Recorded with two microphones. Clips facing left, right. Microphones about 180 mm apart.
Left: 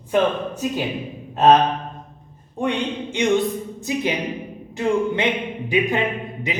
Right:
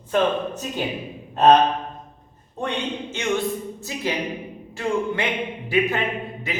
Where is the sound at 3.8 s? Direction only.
20° left (ahead or behind).